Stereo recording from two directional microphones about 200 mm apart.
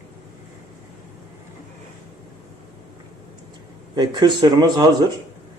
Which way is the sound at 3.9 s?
20° right (ahead or behind).